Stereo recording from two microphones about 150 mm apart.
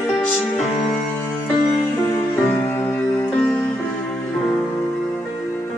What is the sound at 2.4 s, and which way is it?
Music, 10° left (ahead or behind).